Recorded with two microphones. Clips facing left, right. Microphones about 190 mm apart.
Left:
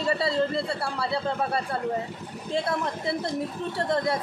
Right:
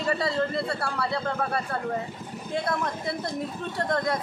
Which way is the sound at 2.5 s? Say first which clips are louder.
Left 1 dB; 25° left (ahead or behind).